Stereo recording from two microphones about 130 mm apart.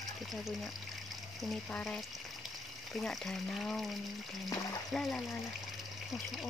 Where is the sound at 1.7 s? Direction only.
10° left (ahead or behind).